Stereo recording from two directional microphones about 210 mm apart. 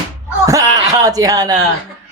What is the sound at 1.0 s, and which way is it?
Speech, 15° right (ahead or behind).